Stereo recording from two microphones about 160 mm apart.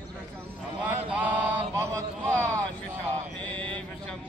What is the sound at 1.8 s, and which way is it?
Speech, 20° right (ahead or behind).